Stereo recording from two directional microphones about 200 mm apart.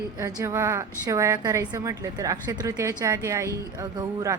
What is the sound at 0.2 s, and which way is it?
A woman's voice, 15° right (ahead or behind).